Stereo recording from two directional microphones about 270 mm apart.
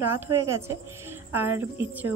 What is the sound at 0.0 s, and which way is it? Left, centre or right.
A woman's voice, centre.